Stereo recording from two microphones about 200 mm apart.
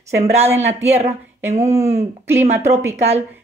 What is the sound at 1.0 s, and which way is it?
Speech, 30° right (ahead or behind).